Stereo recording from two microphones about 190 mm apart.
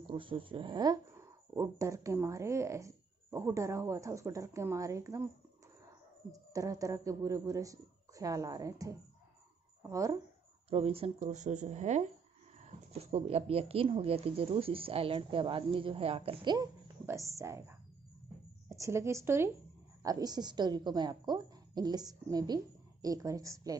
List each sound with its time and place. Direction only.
0.1 s speech: 25° right (ahead or behind)
6.5 s speech: 15° right (ahead or behind)
10.7 s speech: 30° right (ahead or behind)